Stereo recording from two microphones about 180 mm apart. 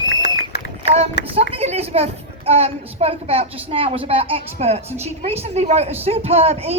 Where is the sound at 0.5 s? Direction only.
65° left (ahead or behind).